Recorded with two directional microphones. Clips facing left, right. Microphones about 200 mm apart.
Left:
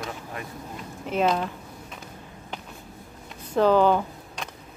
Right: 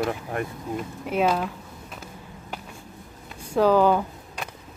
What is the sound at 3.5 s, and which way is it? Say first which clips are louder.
Speech: right 1 dB; 10° right (ahead or behind).